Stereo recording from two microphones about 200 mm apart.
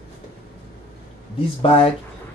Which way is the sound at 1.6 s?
30° left (ahead or behind).